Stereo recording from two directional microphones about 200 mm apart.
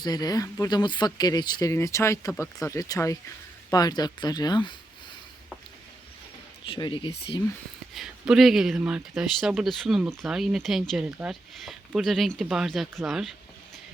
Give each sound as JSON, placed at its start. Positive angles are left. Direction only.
{"t": 0.0, "sound": "speech", "side_deg": 20}
{"t": 6.7, "sound": "speech", "side_deg": 25}
{"t": 7.9, "sound": "speech", "side_deg": 0}